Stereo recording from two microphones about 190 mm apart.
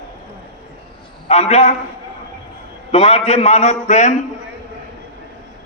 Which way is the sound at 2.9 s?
35° left (ahead or behind).